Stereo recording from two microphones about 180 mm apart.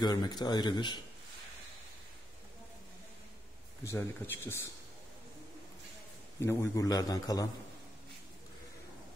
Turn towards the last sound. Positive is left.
turn(degrees=20)  # may be behind; listen again after turning